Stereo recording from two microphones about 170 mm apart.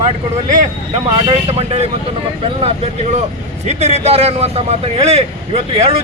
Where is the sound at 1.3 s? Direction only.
35° right (ahead or behind).